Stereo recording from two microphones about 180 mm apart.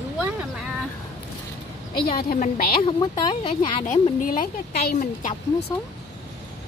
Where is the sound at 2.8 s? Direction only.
25° left (ahead or behind).